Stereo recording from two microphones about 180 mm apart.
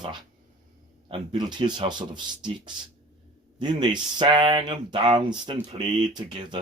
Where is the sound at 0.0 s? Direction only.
25° right (ahead or behind).